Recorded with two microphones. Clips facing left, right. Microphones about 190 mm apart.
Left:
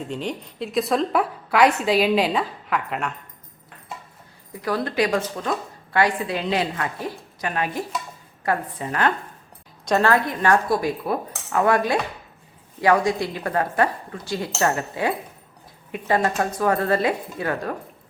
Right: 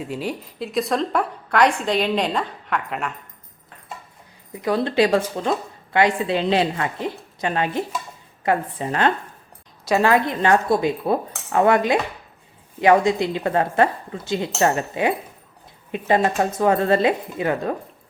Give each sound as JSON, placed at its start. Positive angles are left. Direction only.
{"t": 0.0, "sound": "a woman's voice", "side_deg": -5}
{"t": 4.5, "sound": "a woman's voice", "side_deg": -20}
{"t": 9.8, "sound": "a woman's voice", "side_deg": -10}